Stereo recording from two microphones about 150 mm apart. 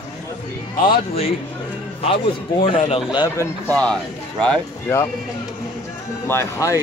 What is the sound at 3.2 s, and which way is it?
Speech, 20° left (ahead or behind).